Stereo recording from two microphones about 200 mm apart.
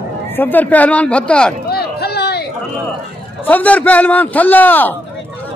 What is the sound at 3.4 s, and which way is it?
A man's voice, 10° left (ahead or behind).